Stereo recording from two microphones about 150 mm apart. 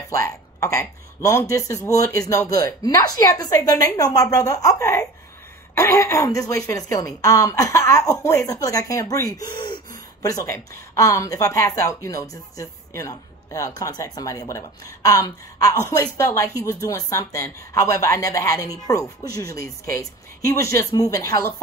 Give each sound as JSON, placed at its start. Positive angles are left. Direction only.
{"t": 0.1, "sound": "speech", "side_deg": 20}